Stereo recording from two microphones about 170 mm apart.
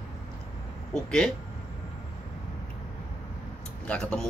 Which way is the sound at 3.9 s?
5° left (ahead or behind).